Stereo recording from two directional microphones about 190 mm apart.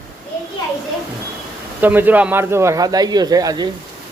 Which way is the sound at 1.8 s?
10° right (ahead or behind).